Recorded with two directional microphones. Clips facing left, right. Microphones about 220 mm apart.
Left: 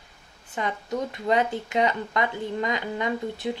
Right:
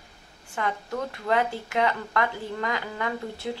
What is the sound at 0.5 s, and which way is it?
Speech, 20° left (ahead or behind).